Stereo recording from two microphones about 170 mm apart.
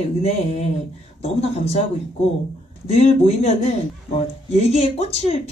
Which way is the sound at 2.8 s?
35° left (ahead or behind).